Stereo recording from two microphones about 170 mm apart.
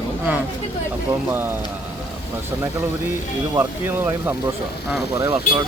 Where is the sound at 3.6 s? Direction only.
10° right (ahead or behind).